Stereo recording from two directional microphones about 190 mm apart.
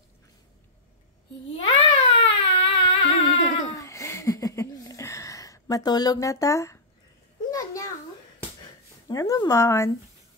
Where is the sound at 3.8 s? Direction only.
15° left (ahead or behind).